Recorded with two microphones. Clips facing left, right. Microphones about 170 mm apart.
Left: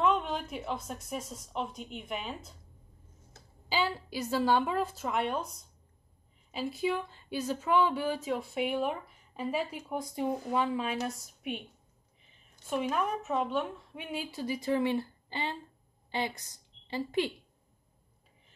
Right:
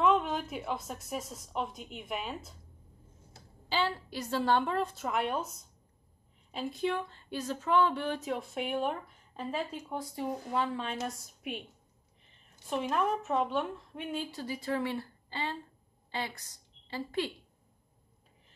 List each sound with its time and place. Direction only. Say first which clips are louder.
0.0 s a woman's voice: right 1 dB; centre (ahead or behind)
3.6 s a woman's voice: even; 10° left (ahead or behind)